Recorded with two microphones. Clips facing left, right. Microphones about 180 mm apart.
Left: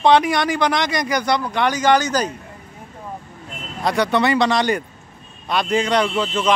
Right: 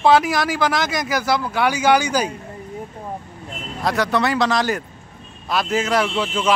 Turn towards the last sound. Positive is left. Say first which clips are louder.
# left 1 dB
turn(degrees=-10)  # may be behind; listen again after turning